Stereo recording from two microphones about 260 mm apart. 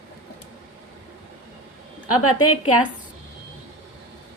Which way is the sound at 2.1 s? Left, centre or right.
Left.